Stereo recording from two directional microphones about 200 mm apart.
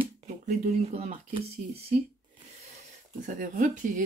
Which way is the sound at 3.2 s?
40° right (ahead or behind).